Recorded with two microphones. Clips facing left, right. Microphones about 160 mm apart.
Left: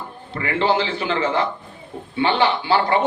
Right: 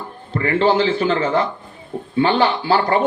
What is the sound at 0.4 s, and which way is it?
Speech, 45° right (ahead or behind).